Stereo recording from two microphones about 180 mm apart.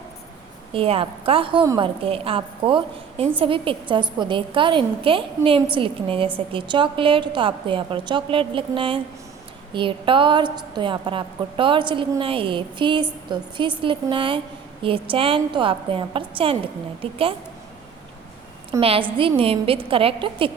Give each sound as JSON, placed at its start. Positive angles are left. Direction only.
{"t": 0.7, "sound": "a woman's voice", "side_deg": -30}
{"t": 2.0, "sound": "a woman's voice", "side_deg": -30}
{"t": 18.8, "sound": "a woman's voice", "side_deg": -30}